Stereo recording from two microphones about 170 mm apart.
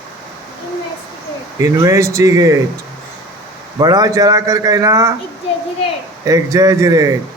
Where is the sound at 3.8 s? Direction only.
20° right (ahead or behind).